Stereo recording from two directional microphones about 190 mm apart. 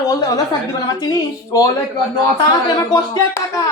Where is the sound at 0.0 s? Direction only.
20° left (ahead or behind).